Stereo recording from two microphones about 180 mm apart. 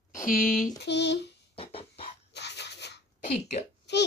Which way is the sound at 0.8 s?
70° left (ahead or behind).